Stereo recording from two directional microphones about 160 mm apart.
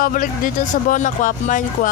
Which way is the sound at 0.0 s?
60° left (ahead or behind).